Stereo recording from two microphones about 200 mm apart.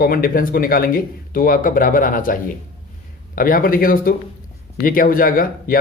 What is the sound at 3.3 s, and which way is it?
Speech, 45° left (ahead or behind).